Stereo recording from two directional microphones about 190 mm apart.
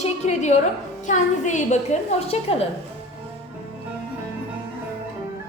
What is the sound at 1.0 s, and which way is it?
A woman's voice, 40° left (ahead or behind).